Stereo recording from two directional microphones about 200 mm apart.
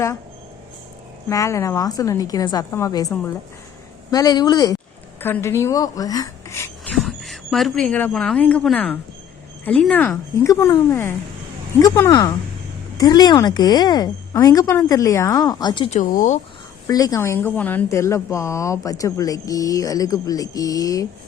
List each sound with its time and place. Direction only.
1.3 s a woman's voice: 15° left (ahead or behind)
6.9 s a woman's voice: centre (ahead or behind); by 15.9 s 20° left (ahead or behind)
15.9 s speech: 40° left (ahead or behind)
16.8 s a woman's voice: 20° left (ahead or behind)